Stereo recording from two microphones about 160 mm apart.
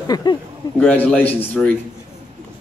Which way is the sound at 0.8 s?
10° left (ahead or behind).